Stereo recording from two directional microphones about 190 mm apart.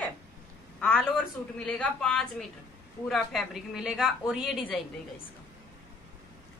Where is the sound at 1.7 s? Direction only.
5° left (ahead or behind).